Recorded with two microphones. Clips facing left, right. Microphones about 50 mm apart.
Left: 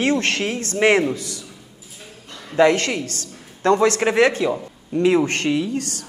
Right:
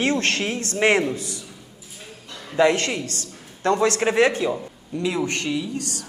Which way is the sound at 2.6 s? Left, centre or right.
Left.